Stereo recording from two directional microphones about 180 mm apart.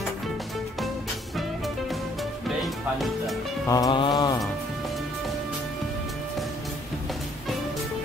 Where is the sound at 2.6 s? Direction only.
Centre (ahead or behind).